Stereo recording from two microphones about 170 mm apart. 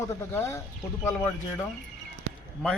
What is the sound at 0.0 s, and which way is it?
Speech, 15° left (ahead or behind).